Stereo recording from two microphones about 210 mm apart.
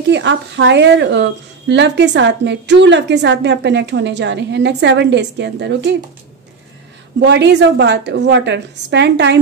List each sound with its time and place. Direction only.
0.1 s a woman's voice: 60° right (ahead or behind)
7.2 s a woman's voice: 55° right (ahead or behind)